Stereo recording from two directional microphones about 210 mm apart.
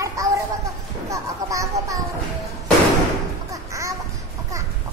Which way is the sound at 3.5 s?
15° right (ahead or behind).